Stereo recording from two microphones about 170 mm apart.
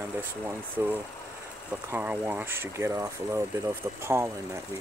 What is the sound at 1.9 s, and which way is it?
Speech, 10° right (ahead or behind).